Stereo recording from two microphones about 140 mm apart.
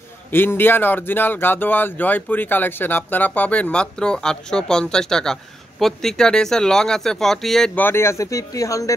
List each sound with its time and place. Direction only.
0.3 s speech: 15° left (ahead or behind)
7.8 s speech: 20° left (ahead or behind)